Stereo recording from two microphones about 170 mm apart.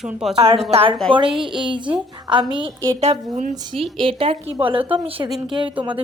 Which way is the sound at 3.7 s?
30° right (ahead or behind).